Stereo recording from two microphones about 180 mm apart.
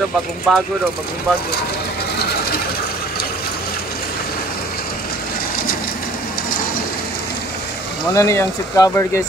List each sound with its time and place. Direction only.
0.5 s speech: 5° left (ahead or behind)
8.1 s speech: 15° left (ahead or behind)